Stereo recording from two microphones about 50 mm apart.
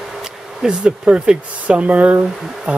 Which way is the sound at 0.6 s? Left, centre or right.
Right.